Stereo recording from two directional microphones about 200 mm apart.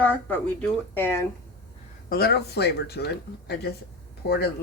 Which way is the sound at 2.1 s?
50° left (ahead or behind).